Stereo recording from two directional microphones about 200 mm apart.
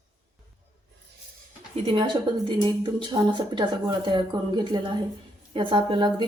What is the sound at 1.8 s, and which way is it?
A woman's voice, 25° right (ahead or behind).